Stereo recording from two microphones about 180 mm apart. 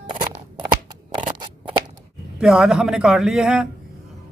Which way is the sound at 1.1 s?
25° right (ahead or behind).